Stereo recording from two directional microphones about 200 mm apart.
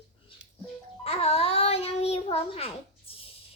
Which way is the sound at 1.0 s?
30° left (ahead or behind).